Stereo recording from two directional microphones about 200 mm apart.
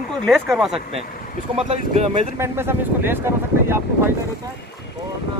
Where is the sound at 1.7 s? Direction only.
35° right (ahead or behind).